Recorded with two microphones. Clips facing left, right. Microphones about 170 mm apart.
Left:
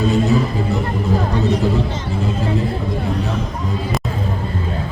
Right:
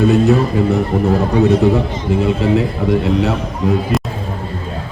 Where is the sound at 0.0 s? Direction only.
65° right (ahead or behind).